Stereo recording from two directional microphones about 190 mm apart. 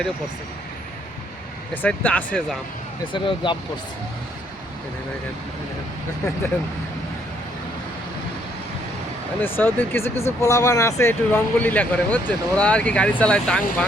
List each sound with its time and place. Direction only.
1.7 s speech: 10° left (ahead or behind)
3.1 s speech: 25° left (ahead or behind)
9.4 s speech: 10° left (ahead or behind)